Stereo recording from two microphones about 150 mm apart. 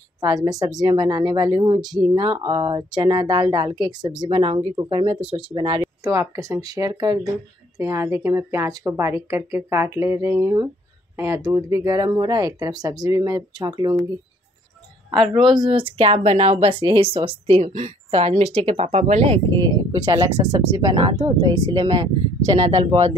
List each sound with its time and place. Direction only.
0.2 s a woman's voice: 25° right (ahead or behind)
6.0 s a woman's voice: 20° right (ahead or behind)
15.6 s speech: 35° right (ahead or behind)